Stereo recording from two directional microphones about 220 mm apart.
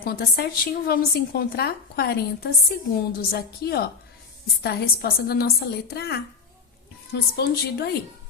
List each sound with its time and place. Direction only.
0.0 s a woman's voice: 40° left (ahead or behind)